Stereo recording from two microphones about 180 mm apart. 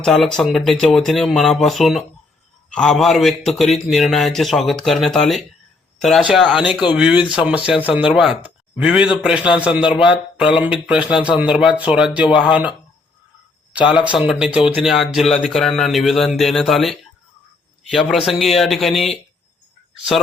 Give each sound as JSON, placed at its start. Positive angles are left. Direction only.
{"t": 0.0, "sound": "speech", "side_deg": 5}
{"t": 13.7, "sound": "speech", "side_deg": -5}